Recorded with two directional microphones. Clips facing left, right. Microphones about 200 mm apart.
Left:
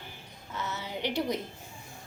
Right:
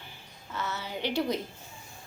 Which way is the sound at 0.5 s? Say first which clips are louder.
Right 1 dB; 15° left (ahead or behind).